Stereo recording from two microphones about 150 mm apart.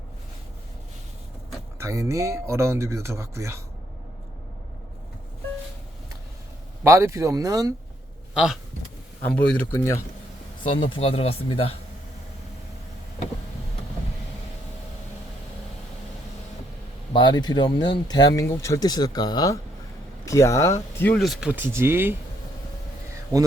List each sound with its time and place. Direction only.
1.8 s speech: 20° right (ahead or behind)
6.8 s speech: 20° right (ahead or behind)
8.3 s speech: 5° right (ahead or behind)
9.2 s speech: 10° left (ahead or behind)
10.7 s speech: 35° left (ahead or behind)
17.1 s speech: 30° left (ahead or behind)
21.2 s speech: centre (ahead or behind)
21.5 s speech: 15° right (ahead or behind)